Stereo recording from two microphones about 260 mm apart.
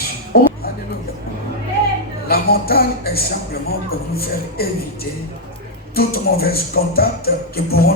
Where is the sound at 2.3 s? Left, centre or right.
Left.